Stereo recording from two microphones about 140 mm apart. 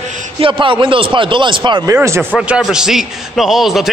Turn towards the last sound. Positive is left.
turn(degrees=0)  # may be behind; listen again after turning